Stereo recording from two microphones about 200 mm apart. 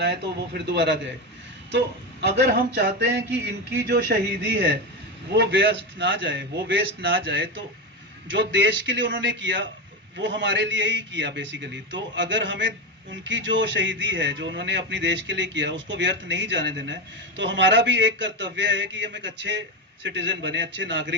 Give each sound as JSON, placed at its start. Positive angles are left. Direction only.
{"t": 0.0, "sound": "a man's voice", "side_deg": -60}
{"t": 2.2, "sound": "a man's voice", "side_deg": -60}